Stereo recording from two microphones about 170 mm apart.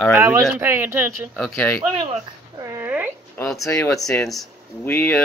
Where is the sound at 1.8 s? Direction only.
30° right (ahead or behind); by 3.1 s 10° right (ahead or behind).